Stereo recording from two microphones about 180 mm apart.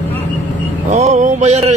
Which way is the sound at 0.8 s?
40° right (ahead or behind).